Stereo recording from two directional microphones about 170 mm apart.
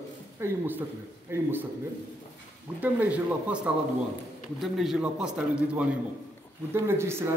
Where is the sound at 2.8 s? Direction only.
10° right (ahead or behind).